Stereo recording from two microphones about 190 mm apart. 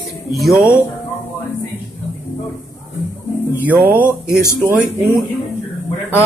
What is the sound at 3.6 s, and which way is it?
Speech, 10° right (ahead or behind).